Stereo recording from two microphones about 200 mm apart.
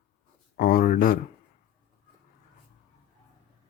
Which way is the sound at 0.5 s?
45° left (ahead or behind).